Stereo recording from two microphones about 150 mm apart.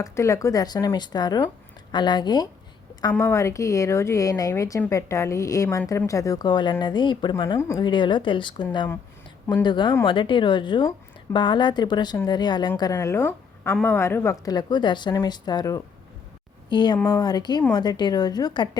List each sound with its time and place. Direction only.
0.0 s a woman's voice: 20° left (ahead or behind)
3.2 s a woman's voice: 20° left (ahead or behind)
9.6 s a woman's voice: 30° left (ahead or behind)